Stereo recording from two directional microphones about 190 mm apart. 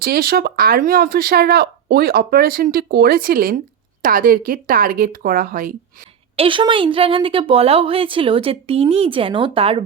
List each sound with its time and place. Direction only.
0.0 s speech: 50° right (ahead or behind)
6.3 s a woman's voice: 30° right (ahead or behind)